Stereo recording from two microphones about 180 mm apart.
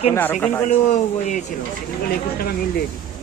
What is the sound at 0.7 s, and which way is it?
Speech, 45° left (ahead or behind).